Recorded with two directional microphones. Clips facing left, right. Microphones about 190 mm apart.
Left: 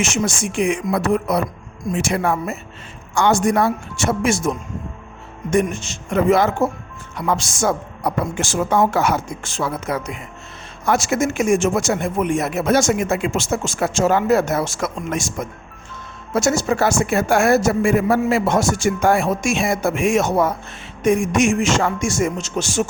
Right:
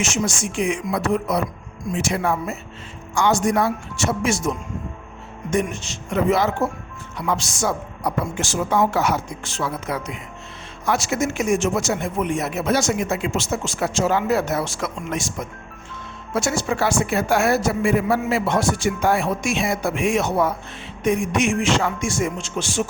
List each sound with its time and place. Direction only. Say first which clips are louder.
0.0 s speech: left 2 dB; 55° left (ahead or behind)
16.3 s speech: left 4 dB; 40° left (ahead or behind)